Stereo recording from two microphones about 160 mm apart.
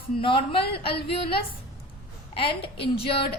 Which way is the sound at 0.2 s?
35° left (ahead or behind).